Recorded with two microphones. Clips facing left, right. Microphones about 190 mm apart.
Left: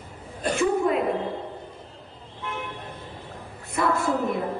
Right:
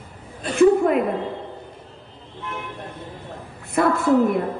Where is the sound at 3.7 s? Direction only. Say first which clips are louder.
Right 7 dB; 55° right (ahead or behind).